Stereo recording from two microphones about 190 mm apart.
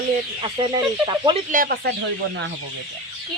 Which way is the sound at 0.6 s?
25° right (ahead or behind).